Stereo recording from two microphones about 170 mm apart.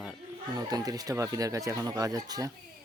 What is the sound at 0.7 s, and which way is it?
Speech, 20° right (ahead or behind).